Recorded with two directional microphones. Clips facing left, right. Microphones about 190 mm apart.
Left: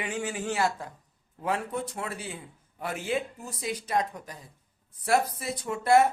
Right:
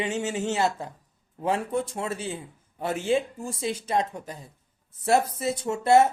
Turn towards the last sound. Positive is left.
turn(degrees=-25)  # may be behind; listen again after turning